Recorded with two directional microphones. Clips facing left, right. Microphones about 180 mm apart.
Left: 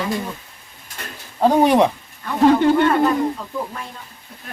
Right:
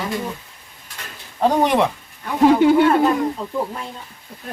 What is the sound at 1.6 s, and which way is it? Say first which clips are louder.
Speech: left 4 dB; 15° left (ahead or behind).